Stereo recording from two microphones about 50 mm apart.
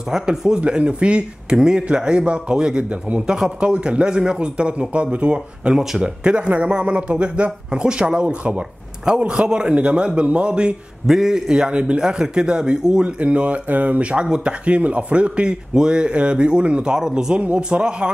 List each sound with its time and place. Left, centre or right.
0.1 s a man's voice: centre
0.6 s speech: right
11.1 s a man's voice: centre; by 14.2 s right
14.2 s a man's voice: centre